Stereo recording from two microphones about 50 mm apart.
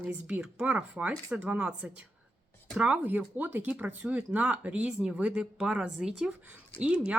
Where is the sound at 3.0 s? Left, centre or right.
Right.